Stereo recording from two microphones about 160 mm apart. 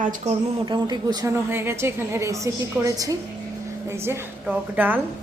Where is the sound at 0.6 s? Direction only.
25° right (ahead or behind).